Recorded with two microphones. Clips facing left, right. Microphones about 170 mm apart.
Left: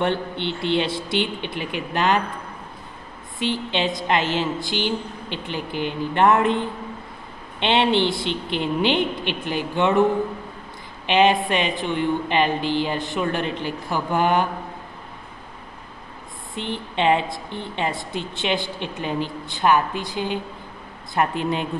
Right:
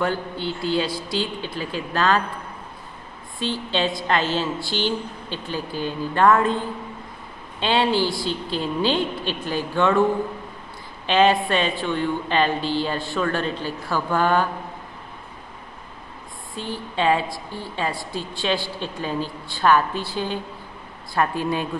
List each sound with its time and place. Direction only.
0.0 s a woman's voice: 25° left (ahead or behind)
3.3 s a woman's voice: 20° left (ahead or behind)
7.6 s a woman's voice: 25° left (ahead or behind)
11.1 s speech: 20° left (ahead or behind)
16.5 s a woman's voice: 20° left (ahead or behind)